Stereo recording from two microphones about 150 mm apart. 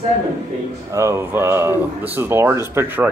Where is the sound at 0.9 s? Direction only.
20° right (ahead or behind).